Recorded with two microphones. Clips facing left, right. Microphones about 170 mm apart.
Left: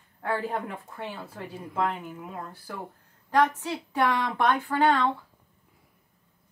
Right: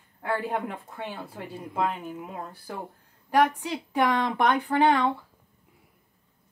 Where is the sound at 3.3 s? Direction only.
10° right (ahead or behind).